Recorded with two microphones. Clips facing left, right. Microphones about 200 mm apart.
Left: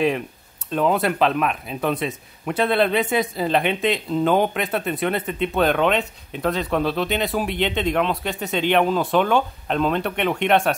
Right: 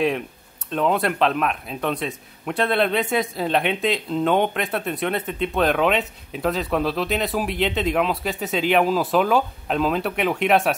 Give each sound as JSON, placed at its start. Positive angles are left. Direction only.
{"t": 0.7, "sound": "a man's voice", "side_deg": 0}